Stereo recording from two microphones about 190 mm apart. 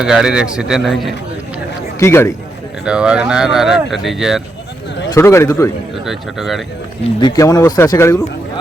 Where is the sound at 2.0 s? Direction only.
15° left (ahead or behind).